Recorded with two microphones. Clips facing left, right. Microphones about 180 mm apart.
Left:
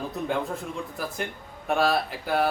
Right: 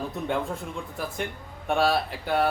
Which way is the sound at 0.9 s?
Centre (ahead or behind).